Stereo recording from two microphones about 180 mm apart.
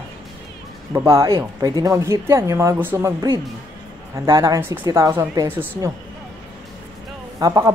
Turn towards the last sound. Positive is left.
turn(degrees=-20)  # may be behind; listen again after turning